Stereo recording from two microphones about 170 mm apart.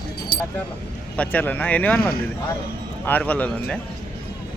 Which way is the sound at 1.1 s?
10° left (ahead or behind).